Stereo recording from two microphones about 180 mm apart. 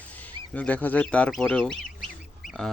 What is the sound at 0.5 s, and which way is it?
Speech, 10° left (ahead or behind).